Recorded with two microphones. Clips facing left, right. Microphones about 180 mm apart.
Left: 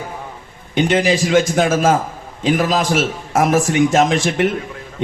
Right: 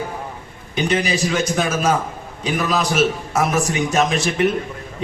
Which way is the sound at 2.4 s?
90° left.